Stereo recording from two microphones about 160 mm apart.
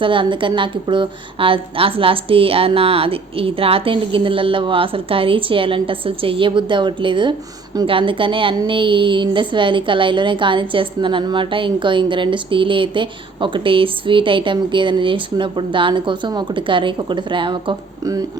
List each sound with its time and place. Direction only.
0.0 s a woman's voice: 30° right (ahead or behind)